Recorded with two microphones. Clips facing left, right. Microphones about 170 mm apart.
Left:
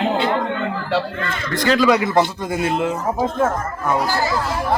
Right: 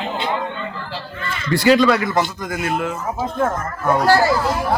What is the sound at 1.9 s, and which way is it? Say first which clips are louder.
Speech: left 2 dB; 20° left (ahead or behind).